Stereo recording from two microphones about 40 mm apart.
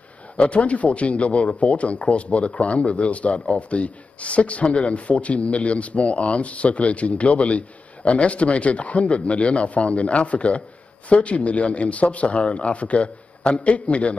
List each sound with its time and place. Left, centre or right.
0.4 s speech: left